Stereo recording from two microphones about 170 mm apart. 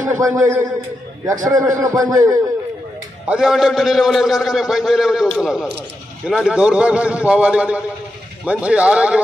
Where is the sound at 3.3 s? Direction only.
5° right (ahead or behind).